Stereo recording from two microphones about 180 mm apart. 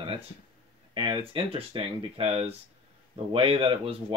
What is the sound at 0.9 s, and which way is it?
Speech, 25° right (ahead or behind).